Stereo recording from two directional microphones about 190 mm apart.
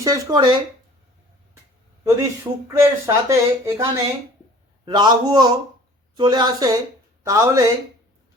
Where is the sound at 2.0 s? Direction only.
15° right (ahead or behind).